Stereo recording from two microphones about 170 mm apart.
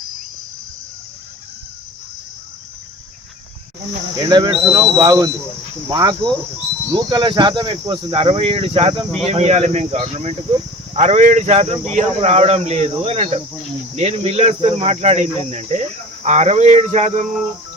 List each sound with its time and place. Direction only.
4.3 s speech: 25° right (ahead or behind); by 17.2 s 45° right (ahead or behind)